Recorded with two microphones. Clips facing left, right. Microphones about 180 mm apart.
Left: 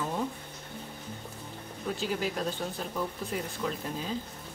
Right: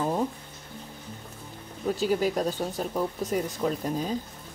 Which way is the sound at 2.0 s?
45° right (ahead or behind).